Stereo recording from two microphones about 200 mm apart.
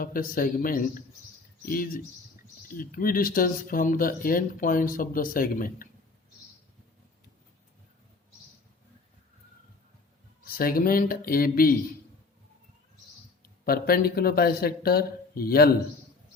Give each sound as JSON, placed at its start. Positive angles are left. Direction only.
{"t": 0.0, "sound": "speech", "side_deg": 45}
{"t": 10.6, "sound": "speech", "side_deg": 45}
{"t": 13.4, "sound": "speech", "side_deg": 50}